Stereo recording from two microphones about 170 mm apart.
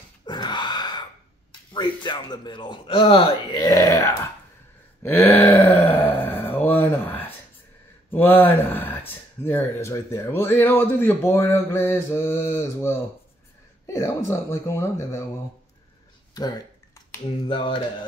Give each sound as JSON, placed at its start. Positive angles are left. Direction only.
{"t": 0.2, "sound": "gasp", "side_deg": 25}
{"t": 1.7, "sound": "speech", "side_deg": 25}
{"t": 5.0, "sound": "groan", "side_deg": 10}
{"t": 8.1, "sound": "speech", "side_deg": 10}
{"t": 17.5, "sound": "speech", "side_deg": 30}